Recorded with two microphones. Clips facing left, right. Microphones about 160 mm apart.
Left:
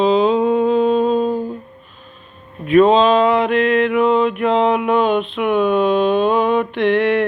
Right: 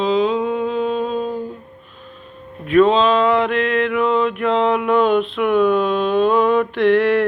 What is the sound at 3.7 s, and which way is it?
Mantra, 20° left (ahead or behind).